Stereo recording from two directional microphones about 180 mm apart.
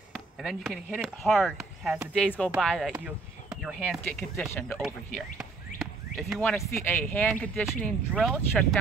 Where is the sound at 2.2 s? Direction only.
5° left (ahead or behind).